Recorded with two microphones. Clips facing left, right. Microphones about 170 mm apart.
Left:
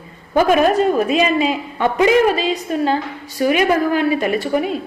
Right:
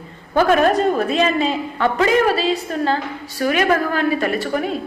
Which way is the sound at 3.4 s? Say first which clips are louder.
Left 2 dB; 15° left (ahead or behind).